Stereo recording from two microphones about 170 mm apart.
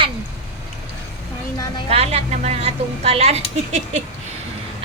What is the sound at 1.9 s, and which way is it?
A woman's voice, 35° right (ahead or behind).